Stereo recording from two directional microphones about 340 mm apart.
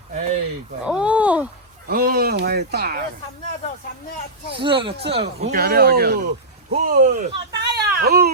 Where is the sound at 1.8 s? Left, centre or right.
Right.